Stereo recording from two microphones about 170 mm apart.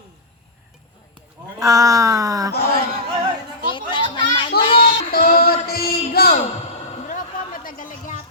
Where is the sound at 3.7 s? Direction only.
30° left (ahead or behind).